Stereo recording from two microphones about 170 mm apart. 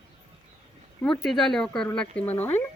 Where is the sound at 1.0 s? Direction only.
Centre (ahead or behind).